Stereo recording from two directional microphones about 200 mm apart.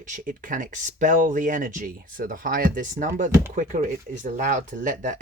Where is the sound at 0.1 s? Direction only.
40° right (ahead or behind).